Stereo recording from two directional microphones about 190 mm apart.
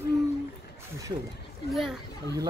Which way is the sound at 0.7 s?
15° right (ahead or behind).